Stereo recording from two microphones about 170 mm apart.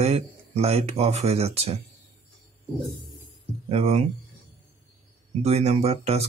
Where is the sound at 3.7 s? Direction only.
35° right (ahead or behind).